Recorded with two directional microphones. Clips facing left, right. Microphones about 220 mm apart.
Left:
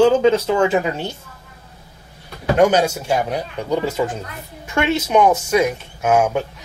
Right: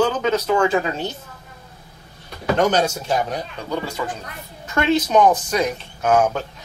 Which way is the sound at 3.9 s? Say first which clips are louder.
Left 6 dB; 20° left (ahead or behind).